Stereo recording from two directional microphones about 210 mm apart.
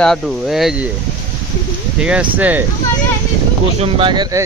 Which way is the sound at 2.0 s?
5° right (ahead or behind).